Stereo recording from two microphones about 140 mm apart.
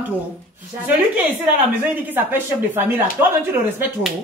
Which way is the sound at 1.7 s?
10° right (ahead or behind).